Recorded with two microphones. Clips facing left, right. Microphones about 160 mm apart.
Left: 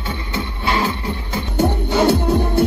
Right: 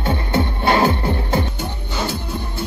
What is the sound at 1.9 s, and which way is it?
Music, 65° left (ahead or behind).